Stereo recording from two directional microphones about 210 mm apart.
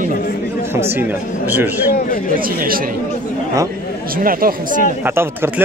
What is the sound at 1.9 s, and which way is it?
Speech, 45° left (ahead or behind).